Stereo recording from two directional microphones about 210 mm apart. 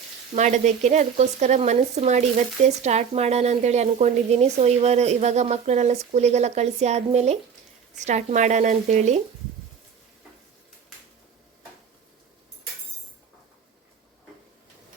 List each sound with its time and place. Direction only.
0.3 s speech: 35° right (ahead or behind)